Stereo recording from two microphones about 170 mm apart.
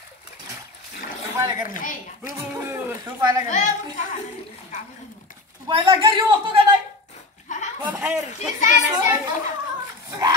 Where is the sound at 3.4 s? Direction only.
45° left (ahead or behind).